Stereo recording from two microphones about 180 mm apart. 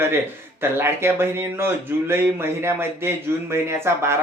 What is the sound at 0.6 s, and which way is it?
Speech, 15° right (ahead or behind).